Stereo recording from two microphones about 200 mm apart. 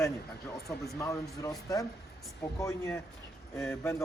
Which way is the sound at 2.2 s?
Centre (ahead or behind).